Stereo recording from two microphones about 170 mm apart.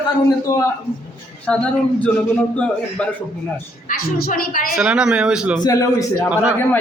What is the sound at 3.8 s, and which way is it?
Speech, 60° left (ahead or behind).